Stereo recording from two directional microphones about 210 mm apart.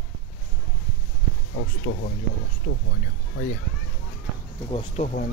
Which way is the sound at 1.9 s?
50° left (ahead or behind).